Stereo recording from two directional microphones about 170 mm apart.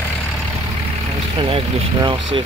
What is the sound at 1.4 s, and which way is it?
Speech, 35° right (ahead or behind).